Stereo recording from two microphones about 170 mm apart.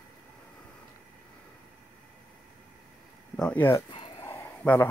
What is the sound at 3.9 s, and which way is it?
Dog, 30° left (ahead or behind).